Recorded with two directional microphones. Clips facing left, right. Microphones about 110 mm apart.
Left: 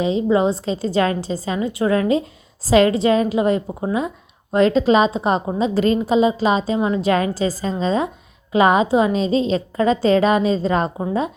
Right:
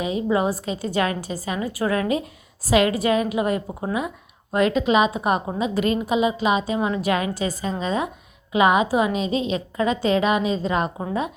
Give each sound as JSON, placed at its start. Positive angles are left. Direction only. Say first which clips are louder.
{"t": 0.0, "sound": "a woman's voice", "louder": "left 5 dB", "side_deg": 25}